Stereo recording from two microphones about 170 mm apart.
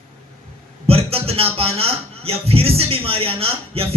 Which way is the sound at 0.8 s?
35° right (ahead or behind).